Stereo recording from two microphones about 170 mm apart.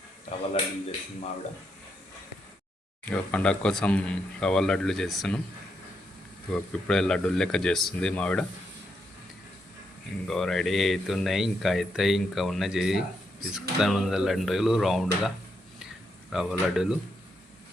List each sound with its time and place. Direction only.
0.5 s speech: 30° left (ahead or behind)
3.1 s speech: 5° left (ahead or behind)
6.5 s speech: 5° left (ahead or behind)
10.2 s speech: centre (ahead or behind)
16.3 s speech: 5° right (ahead or behind)